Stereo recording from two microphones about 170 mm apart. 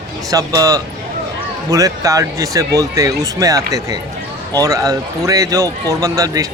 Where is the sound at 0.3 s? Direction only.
20° right (ahead or behind).